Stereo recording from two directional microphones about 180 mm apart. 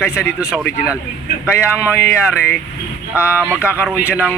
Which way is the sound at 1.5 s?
15° left (ahead or behind).